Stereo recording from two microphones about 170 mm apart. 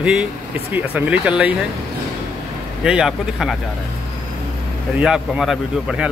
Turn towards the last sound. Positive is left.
turn(degrees=-5)  # may be behind; listen again after turning